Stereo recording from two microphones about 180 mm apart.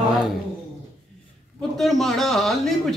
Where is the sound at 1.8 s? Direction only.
Centre (ahead or behind).